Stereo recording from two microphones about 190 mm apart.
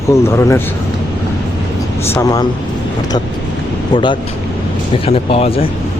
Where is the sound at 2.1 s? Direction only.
20° left (ahead or behind).